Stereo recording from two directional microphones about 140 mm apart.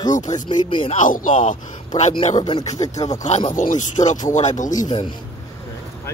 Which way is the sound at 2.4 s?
30° left (ahead or behind).